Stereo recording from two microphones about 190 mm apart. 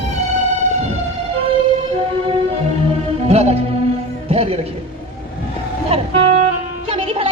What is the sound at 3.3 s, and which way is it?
Music, 35° right (ahead or behind).